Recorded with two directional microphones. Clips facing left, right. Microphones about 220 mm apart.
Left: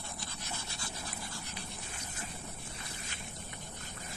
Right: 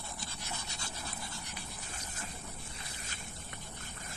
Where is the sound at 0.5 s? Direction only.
20° right (ahead or behind).